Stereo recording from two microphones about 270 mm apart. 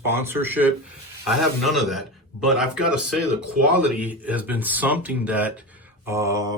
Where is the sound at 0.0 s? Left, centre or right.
Centre.